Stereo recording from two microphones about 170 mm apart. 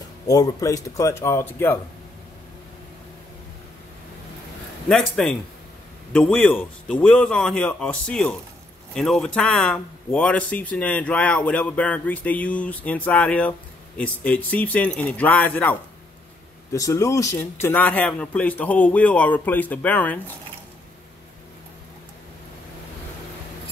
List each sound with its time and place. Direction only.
0.3 s speech: 20° left (ahead or behind)
4.8 s speech: 5° left (ahead or behind)